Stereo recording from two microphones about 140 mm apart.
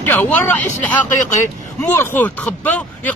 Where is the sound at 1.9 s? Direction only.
15° left (ahead or behind).